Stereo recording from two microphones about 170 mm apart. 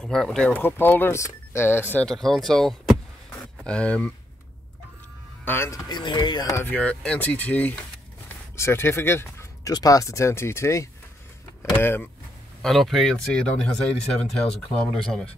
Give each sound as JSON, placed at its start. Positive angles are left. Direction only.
{"t": 0.0, "sound": "speech", "side_deg": 5}
{"t": 5.4, "sound": "speech", "side_deg": 15}
{"t": 12.6, "sound": "speech", "side_deg": 0}